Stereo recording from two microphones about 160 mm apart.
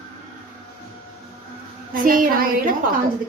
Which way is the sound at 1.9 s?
60° right (ahead or behind).